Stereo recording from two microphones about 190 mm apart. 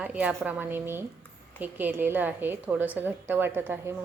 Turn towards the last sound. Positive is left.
turn(degrees=-10)  # may be behind; listen again after turning